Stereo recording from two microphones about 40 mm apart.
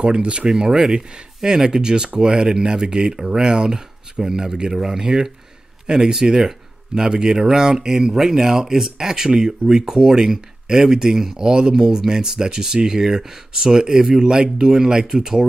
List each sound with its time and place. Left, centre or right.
0.0 s speech: right
0.5 s speech: centre